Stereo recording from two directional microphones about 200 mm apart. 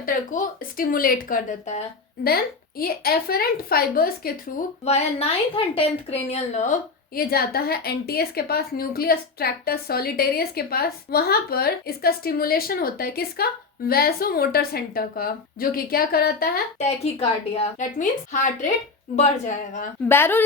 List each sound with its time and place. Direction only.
0.0 s a woman's voice: 40° left (ahead or behind)
2.2 s a woman's voice: 50° left (ahead or behind)
4.9 s a woman's voice: 30° left (ahead or behind)
7.2 s a woman's voice: 50° left (ahead or behind)
16.7 s a woman's voice: 30° left (ahead or behind)
20.1 s a woman's voice: 10° left (ahead or behind)